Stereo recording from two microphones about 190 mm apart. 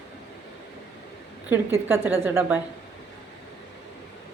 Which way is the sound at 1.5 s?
10° right (ahead or behind).